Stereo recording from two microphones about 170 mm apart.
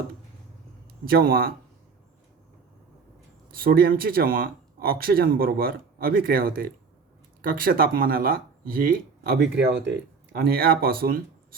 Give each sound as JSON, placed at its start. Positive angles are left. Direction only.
{"t": 1.0, "sound": "speech", "side_deg": -60}
{"t": 3.5, "sound": "speech", "side_deg": -60}
{"t": 10.3, "sound": "speech", "side_deg": -65}